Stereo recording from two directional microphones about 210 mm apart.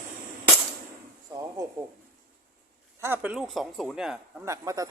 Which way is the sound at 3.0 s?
10° right (ahead or behind).